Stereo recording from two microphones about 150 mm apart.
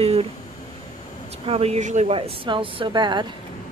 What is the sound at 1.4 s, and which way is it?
Speech, 40° right (ahead or behind).